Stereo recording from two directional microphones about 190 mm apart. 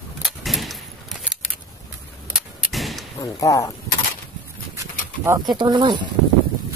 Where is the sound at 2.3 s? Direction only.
Centre (ahead or behind).